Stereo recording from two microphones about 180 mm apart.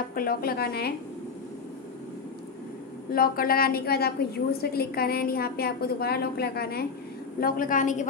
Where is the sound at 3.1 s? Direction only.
55° left (ahead or behind).